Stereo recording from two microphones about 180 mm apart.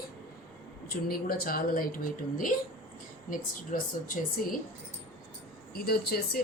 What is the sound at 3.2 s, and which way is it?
A woman's voice, 50° left (ahead or behind).